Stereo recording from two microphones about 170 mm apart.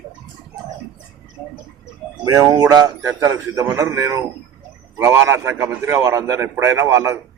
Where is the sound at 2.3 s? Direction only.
20° right (ahead or behind).